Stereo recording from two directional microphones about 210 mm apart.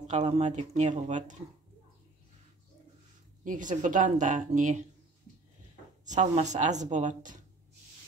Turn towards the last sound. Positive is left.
turn(degrees=-35)  # may be behind; listen again after turning